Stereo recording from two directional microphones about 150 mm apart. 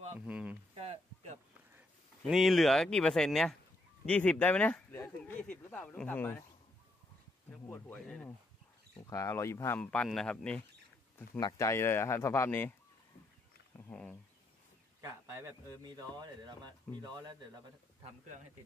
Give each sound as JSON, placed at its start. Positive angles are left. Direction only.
{"t": 0.3, "sound": "a sound", "side_deg": -10}
{"t": 0.8, "sound": "a sound", "side_deg": -50}
{"t": 2.2, "sound": "speech", "side_deg": 0}
{"t": 7.6, "sound": "speech", "side_deg": 15}
{"t": 9.0, "sound": "speech", "side_deg": 20}
{"t": 9.8, "sound": "speech", "side_deg": 5}
{"t": 11.3, "sound": "speech", "side_deg": 25}
{"t": 13.7, "sound": "a sound", "side_deg": 15}
{"t": 15.0, "sound": "a man's voice", "side_deg": -20}